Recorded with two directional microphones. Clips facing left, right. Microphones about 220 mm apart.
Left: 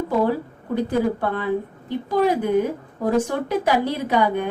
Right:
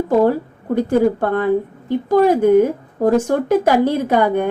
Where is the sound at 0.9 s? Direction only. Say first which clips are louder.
Right 7 dB; 50° right (ahead or behind).